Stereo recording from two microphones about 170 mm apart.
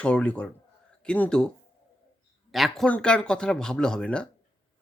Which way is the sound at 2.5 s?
Centre (ahead or behind).